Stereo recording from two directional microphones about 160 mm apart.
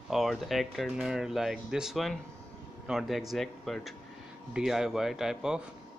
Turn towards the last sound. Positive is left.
turn(degrees=-5)  # may be behind; listen again after turning